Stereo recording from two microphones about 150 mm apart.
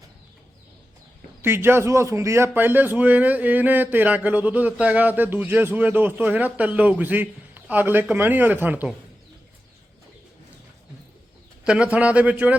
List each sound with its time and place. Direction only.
1.4 s speech: 15° right (ahead or behind)
11.6 s speech: 5° right (ahead or behind)